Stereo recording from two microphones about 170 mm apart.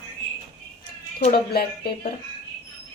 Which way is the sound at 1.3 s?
70° left (ahead or behind).